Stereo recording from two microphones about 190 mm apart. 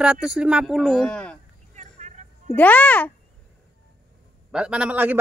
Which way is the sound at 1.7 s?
40° right (ahead or behind).